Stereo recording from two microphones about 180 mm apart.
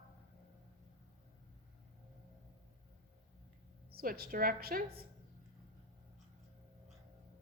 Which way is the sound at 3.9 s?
55° right (ahead or behind).